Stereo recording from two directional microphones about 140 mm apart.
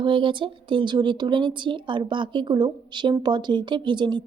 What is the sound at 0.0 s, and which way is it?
Speech, 35° right (ahead or behind).